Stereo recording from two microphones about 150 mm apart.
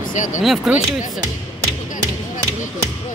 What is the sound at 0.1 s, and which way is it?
Speech, 60° left (ahead or behind).